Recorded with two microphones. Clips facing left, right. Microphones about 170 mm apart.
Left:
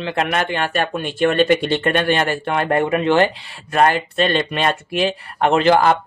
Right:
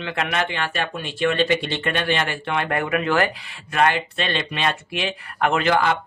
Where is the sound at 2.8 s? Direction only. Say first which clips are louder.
Left 6 dB; 30° left (ahead or behind).